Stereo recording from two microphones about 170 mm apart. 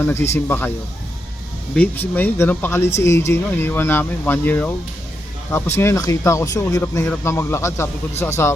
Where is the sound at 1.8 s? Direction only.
10° left (ahead or behind).